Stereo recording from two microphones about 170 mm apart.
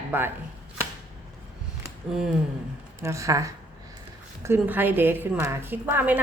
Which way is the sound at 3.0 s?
15° right (ahead or behind).